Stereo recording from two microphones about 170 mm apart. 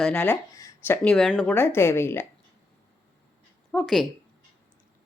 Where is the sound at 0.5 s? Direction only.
20° left (ahead or behind).